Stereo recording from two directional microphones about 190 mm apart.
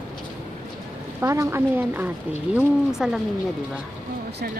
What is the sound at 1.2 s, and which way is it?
Speech, 15° right (ahead or behind).